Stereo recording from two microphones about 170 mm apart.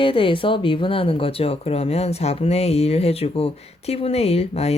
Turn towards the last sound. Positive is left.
turn(degrees=40)  # may be behind; listen again after turning